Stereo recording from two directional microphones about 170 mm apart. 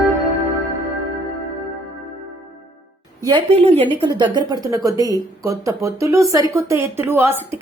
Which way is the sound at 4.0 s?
25° right (ahead or behind).